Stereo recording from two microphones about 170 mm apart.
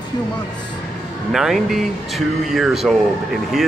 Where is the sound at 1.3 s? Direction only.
Centre (ahead or behind).